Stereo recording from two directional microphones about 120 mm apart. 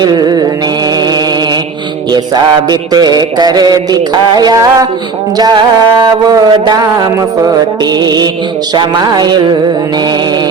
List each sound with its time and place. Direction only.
0.0 s music: 35° right (ahead or behind)
2.1 s music: 35° right (ahead or behind)